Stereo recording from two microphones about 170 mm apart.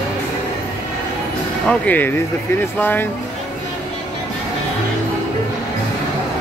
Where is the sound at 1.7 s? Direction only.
10° left (ahead or behind).